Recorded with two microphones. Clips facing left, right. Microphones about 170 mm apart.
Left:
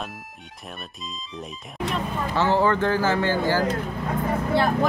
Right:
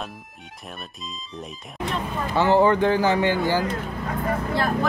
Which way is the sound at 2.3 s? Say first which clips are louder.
Right 3 dB; 15° right (ahead or behind).